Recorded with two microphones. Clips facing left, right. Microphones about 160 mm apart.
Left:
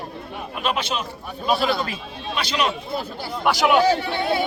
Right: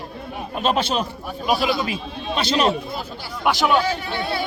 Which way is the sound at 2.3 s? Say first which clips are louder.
Right 4 dB; 30° right (ahead or behind).